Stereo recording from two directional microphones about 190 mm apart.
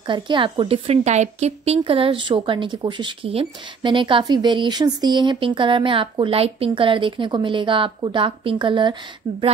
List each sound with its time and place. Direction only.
0.0 s speech: 25° right (ahead or behind)